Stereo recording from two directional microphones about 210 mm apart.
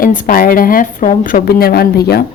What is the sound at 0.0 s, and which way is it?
A woman's voice, 40° left (ahead or behind).